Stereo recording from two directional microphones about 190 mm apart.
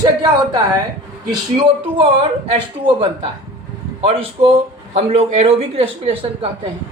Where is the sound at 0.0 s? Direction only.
20° right (ahead or behind).